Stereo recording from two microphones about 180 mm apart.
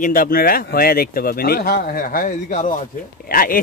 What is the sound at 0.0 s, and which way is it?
Speech, 50° left (ahead or behind).